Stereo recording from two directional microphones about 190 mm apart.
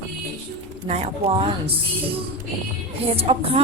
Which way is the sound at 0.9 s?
35° right (ahead or behind).